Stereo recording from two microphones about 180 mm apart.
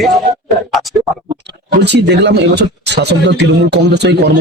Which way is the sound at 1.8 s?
70° right (ahead or behind).